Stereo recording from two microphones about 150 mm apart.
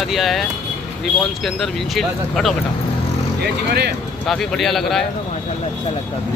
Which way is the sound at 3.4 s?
90° right.